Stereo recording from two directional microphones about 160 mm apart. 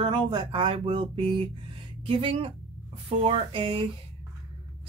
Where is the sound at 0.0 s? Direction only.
30° right (ahead or behind).